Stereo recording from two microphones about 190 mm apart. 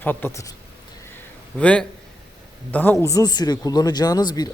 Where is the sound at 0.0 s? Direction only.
10° left (ahead or behind).